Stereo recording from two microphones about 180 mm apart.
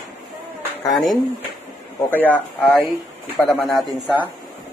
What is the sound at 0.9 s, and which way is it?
A man's voice, centre (ahead or behind).